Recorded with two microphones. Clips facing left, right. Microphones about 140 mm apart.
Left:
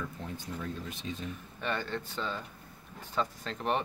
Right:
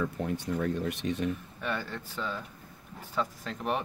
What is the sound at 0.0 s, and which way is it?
Speech, 70° right (ahead or behind).